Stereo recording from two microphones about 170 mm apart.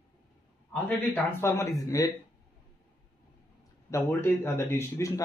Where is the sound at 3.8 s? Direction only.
15° left (ahead or behind).